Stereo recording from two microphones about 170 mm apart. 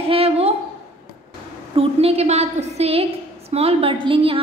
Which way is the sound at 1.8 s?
35° right (ahead or behind).